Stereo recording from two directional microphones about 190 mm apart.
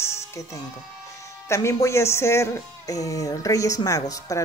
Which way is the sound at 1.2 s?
15° left (ahead or behind).